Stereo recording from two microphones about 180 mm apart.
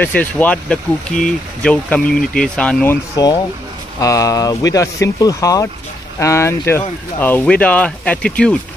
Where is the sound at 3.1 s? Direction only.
20° left (ahead or behind).